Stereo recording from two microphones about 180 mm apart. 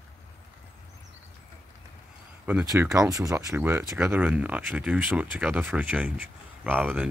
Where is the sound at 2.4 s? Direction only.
5° right (ahead or behind).